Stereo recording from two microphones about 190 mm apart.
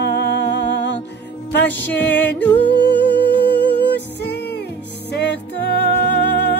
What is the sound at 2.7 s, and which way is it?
Music, 65° left (ahead or behind).